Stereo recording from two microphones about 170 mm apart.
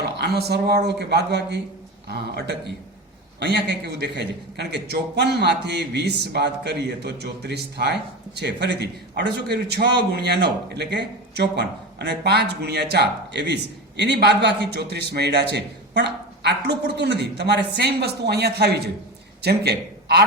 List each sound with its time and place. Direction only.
0.2 s a man's voice: 70° right (ahead or behind)